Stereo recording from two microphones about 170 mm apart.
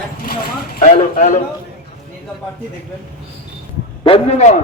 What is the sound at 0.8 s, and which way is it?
Speech, 50° left (ahead or behind).